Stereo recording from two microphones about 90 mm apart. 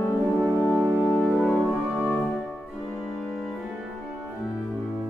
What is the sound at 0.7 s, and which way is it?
Music, 20° right (ahead or behind).